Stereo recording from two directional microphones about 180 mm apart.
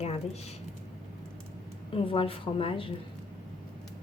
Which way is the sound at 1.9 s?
30° left (ahead or behind).